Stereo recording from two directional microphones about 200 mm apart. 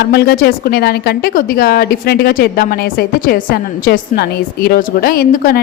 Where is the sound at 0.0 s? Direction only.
55° left (ahead or behind).